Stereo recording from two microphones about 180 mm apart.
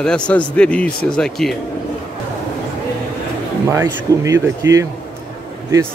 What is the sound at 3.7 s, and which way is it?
Speech, 15° right (ahead or behind).